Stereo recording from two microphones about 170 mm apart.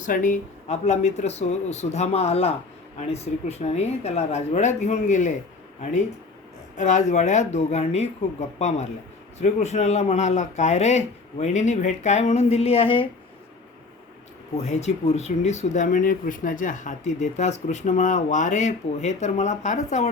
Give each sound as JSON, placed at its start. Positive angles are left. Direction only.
{"t": 0.0, "sound": "speech", "side_deg": 50}
{"t": 6.7, "sound": "speech", "side_deg": 45}
{"t": 14.5, "sound": "speech", "side_deg": 40}